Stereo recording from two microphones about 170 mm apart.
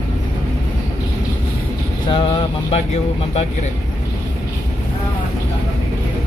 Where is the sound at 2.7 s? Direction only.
40° left (ahead or behind).